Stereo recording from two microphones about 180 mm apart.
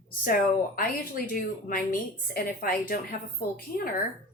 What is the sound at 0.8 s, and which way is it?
A woman's voice, 55° left (ahead or behind).